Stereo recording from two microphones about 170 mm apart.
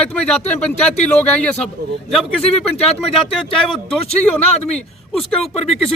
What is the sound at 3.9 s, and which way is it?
Speech, 5° left (ahead or behind).